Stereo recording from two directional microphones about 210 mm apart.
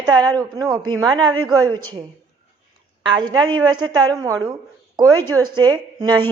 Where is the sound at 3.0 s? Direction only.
20° right (ahead or behind).